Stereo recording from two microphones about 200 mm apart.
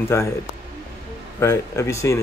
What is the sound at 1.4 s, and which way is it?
Speech, 15° left (ahead or behind).